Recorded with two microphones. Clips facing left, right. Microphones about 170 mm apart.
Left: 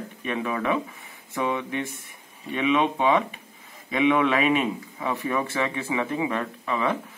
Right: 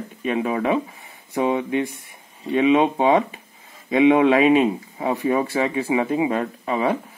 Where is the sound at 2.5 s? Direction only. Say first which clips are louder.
Right 6 dB; 35° right (ahead or behind).